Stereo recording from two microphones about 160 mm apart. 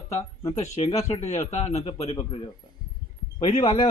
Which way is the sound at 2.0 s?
30° left (ahead or behind).